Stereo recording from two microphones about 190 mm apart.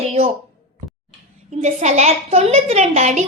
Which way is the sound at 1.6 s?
35° right (ahead or behind).